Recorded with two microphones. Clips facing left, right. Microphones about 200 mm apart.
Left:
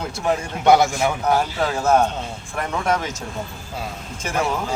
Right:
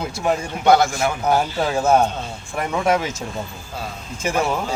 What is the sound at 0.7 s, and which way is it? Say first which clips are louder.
Speech: even; 20° left (ahead or behind).